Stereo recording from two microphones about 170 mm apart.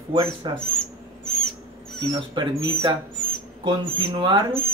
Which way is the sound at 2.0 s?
25° right (ahead or behind).